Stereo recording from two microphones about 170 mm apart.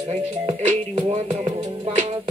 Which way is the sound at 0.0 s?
45° right (ahead or behind).